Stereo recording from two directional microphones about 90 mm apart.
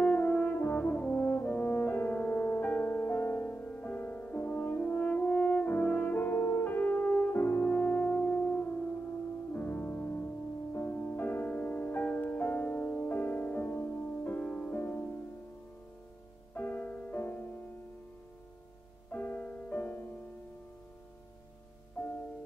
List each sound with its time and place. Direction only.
0.0 s french horn: 15° left (ahead or behind)
9.5 s music: 20° left (ahead or behind)
16.5 s music: 20° left (ahead or behind)
19.0 s music: 20° left (ahead or behind)
22.0 s music: 15° left (ahead or behind)